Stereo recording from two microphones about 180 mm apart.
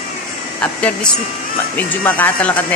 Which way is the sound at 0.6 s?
5° left (ahead or behind).